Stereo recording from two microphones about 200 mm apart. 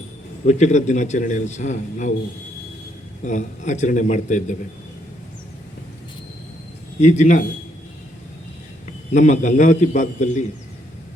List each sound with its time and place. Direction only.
0.4 s a man's voice: 35° left (ahead or behind)
3.2 s a man's voice: 35° left (ahead or behind)
7.0 s a man's voice: 35° left (ahead or behind)
9.1 s a man's voice: 35° left (ahead or behind)